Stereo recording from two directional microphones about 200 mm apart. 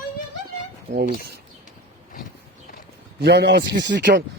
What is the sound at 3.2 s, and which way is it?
A man's voice, 55° right (ahead or behind).